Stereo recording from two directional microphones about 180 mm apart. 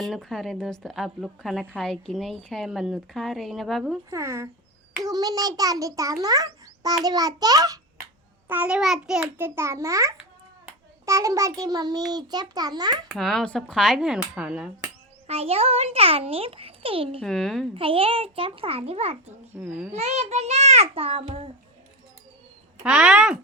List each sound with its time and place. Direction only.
0.0 s speech: centre (ahead or behind)
4.1 s a child's voice: 15° right (ahead or behind)
8.4 s a child's voice: 10° right (ahead or behind); by 13.0 s 25° right (ahead or behind)
13.1 s speech: centre (ahead or behind)
15.3 s a child's voice: 35° right (ahead or behind)
17.2 s speech: 5° left (ahead or behind)
17.7 s a child's voice: 30° right (ahead or behind)
19.6 s a child's voice: 5° right (ahead or behind)
19.9 s a child's voice: 40° right (ahead or behind)
22.8 s speech: 5° right (ahead or behind)